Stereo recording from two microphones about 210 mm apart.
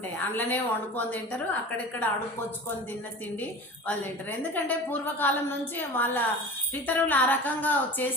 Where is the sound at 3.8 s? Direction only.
10° left (ahead or behind).